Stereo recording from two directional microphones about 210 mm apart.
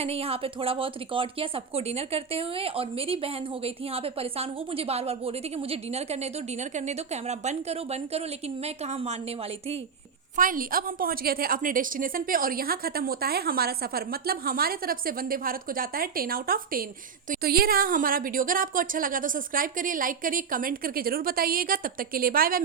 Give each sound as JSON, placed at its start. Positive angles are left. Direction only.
{"t": 0.0, "sound": "a woman's voice", "side_deg": -30}
{"t": 10.3, "sound": "a woman's voice", "side_deg": -40}